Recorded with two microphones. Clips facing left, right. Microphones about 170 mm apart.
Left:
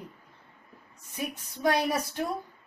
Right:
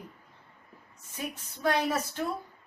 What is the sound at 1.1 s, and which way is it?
A woman's voice, 15° left (ahead or behind).